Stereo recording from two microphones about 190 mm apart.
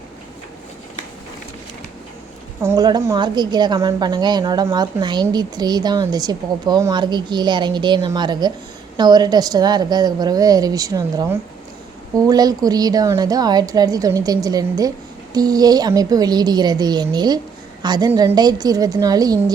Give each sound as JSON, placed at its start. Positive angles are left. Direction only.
{"t": 2.6, "sound": "a woman's voice", "side_deg": -20}